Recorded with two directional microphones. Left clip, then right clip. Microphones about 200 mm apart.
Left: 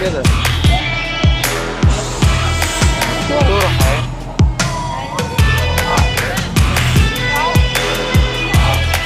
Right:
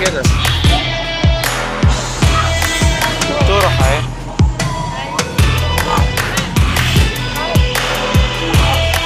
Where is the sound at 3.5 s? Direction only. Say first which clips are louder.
Right 2 dB; centre (ahead or behind).